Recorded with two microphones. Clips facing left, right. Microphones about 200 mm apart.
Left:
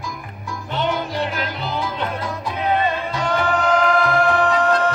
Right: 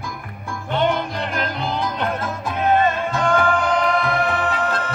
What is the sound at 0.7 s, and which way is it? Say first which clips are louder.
Music: right 3 dB; 55° right (ahead or behind).